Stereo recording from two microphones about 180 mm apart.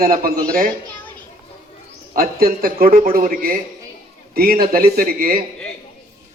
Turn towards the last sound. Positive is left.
turn(degrees=-55)  # may be behind; listen again after turning